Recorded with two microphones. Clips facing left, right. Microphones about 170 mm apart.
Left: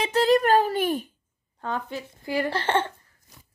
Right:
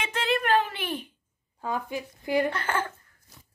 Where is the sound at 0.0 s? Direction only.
40° left (ahead or behind).